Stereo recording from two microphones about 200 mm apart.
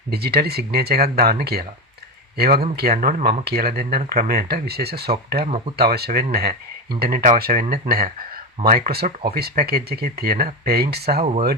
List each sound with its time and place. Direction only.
0.1 s speech: 50° right (ahead or behind)
2.9 s speech: 40° right (ahead or behind)
5.5 s speech: 30° right (ahead or behind)
5.7 s speech: 50° right (ahead or behind)
11.2 s speech: 35° right (ahead or behind)